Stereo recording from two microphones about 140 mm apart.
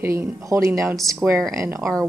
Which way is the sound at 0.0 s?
20° right (ahead or behind).